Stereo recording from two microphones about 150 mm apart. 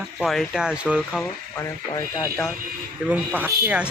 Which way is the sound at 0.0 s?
Centre (ahead or behind).